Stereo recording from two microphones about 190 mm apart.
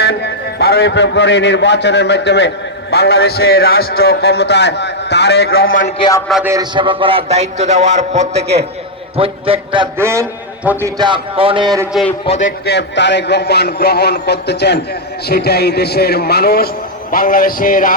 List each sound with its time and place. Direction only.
0.6 s a man's voice: 60° left (ahead or behind)
6.0 s a man's voice: 20° left (ahead or behind)
6.4 s a man's voice: 20° right (ahead or behind)
10.0 s a man's voice: 15° right (ahead or behind)
12.2 s a man's voice: 35° left (ahead or behind)
12.5 s a man's voice: 65° left (ahead or behind); by 17.9 s 45° left (ahead or behind)